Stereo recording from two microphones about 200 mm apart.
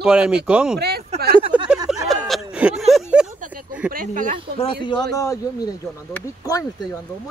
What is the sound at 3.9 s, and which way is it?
Speech, 45° right (ahead or behind).